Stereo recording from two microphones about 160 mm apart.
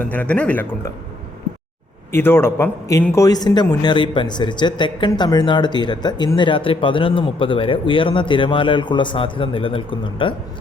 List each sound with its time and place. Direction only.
0.0 s speech: 10° left (ahead or behind)
2.1 s a man's voice: 15° left (ahead or behind); by 10.3 s 35° left (ahead or behind)